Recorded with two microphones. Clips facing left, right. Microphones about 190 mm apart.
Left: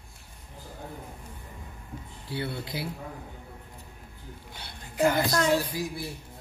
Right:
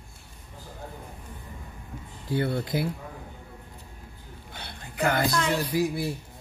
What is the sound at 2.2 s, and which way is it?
Speech, 45° right (ahead or behind).